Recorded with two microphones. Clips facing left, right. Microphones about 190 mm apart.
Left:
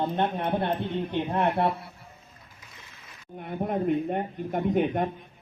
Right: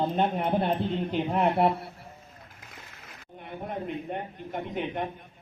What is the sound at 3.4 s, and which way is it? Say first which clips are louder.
A man's voice: left 7 dB; 50° left (ahead or behind).